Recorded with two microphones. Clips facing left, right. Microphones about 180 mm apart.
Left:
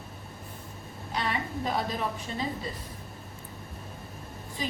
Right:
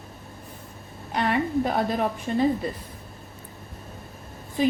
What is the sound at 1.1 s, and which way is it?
A woman's voice, 55° right (ahead or behind).